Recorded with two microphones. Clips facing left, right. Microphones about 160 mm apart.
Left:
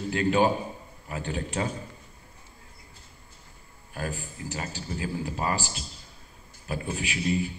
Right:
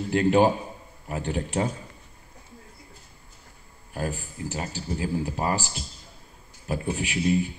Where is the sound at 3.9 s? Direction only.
25° right (ahead or behind).